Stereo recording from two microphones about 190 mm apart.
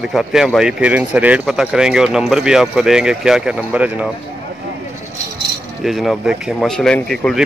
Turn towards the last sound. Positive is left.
turn(degrees=0)  # may be behind; listen again after turning